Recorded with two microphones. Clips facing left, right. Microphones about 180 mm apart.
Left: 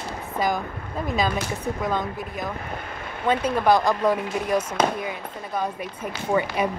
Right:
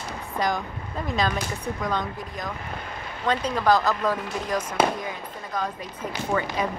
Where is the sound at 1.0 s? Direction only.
5° left (ahead or behind).